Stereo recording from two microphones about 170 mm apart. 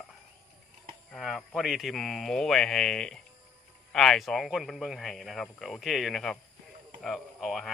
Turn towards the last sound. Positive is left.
turn(degrees=0)  # may be behind; listen again after turning